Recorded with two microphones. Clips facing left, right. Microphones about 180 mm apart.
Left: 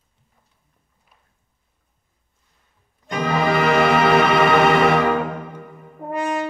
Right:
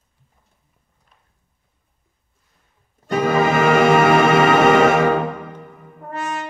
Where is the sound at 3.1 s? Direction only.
45° right (ahead or behind).